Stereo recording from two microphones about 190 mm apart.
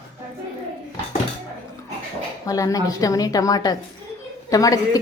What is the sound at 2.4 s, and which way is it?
A woman's voice, 20° left (ahead or behind).